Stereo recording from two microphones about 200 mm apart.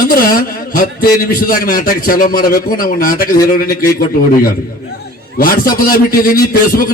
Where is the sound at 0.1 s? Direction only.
45° left (ahead or behind).